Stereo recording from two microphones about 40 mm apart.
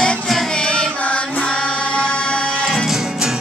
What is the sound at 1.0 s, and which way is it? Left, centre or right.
Music, left.